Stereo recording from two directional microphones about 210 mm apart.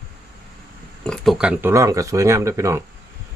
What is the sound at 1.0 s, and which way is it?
Speech, centre (ahead or behind).